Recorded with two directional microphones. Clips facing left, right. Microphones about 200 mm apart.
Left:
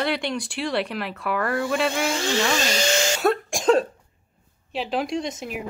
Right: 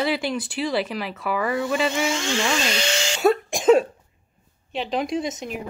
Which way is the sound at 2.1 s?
40° left (ahead or behind).